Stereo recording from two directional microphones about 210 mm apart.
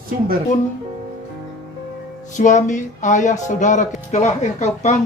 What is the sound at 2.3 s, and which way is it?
Speech, 35° left (ahead or behind).